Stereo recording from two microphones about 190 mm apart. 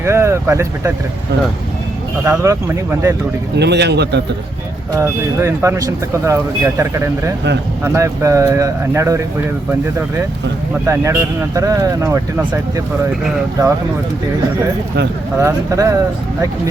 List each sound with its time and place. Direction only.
0.0 s speech: 15° right (ahead or behind)
2.2 s speech: 15° right (ahead or behind)
3.6 s speech: 60° right (ahead or behind)
4.9 s speech: 15° right (ahead or behind)
10.8 s speech: 15° right (ahead or behind)
15.4 s speech: 15° right (ahead or behind)